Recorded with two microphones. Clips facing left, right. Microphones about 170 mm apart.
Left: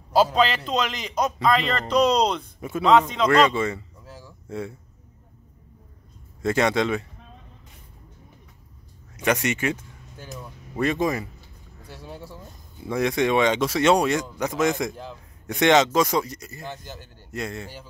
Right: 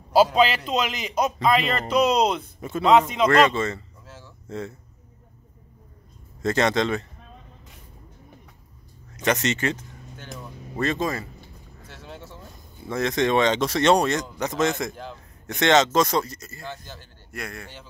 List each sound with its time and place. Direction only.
0.1 s a man's voice: 10° right (ahead or behind)
3.4 s a sound: 10° left (ahead or behind)
6.4 s speech: 10° left (ahead or behind)
9.1 s speech: 10° left (ahead or behind)
11.8 s a sound: 10° left (ahead or behind)
12.8 s speech: 10° left (ahead or behind)